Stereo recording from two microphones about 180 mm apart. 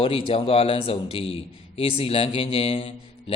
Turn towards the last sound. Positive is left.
turn(degrees=30)  # may be behind; listen again after turning